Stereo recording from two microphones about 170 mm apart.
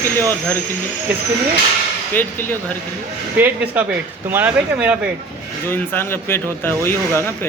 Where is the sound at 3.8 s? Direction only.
10° right (ahead or behind).